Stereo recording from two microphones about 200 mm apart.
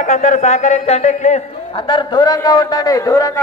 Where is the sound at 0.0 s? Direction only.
40° left (ahead or behind).